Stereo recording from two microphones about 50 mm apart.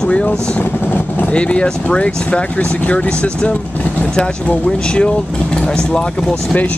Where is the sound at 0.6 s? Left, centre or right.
Left.